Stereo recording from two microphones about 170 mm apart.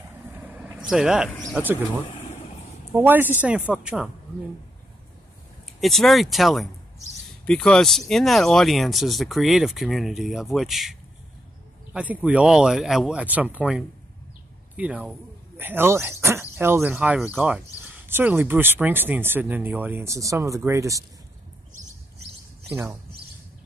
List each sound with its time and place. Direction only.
0.3 s vehicle: 10° right (ahead or behind)
1.5 s speech: 10° right (ahead or behind)
2.0 s vehicle: 35° left (ahead or behind)
2.9 s speech: 10° right (ahead or behind)
5.8 s speech: centre (ahead or behind); by 21.0 s 15° right (ahead or behind)